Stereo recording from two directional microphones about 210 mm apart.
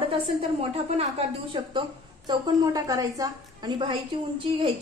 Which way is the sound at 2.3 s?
15° right (ahead or behind).